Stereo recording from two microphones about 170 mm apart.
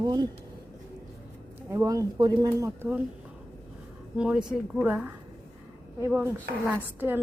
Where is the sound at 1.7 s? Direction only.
20° right (ahead or behind).